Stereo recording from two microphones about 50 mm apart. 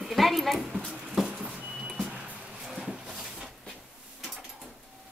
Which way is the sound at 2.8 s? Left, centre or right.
Centre.